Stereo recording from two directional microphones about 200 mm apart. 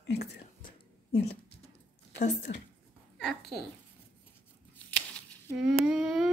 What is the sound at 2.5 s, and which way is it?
Speech, 35° left (ahead or behind).